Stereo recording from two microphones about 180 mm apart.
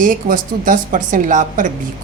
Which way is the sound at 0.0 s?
50° right (ahead or behind).